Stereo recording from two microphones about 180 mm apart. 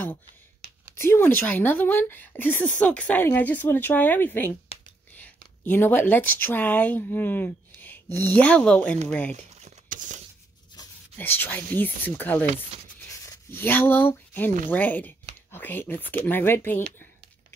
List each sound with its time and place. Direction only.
0.9 s a woman's voice: 15° left (ahead or behind)
9.7 s a sound: 45° right (ahead or behind)
11.1 s speech: 10° left (ahead or behind)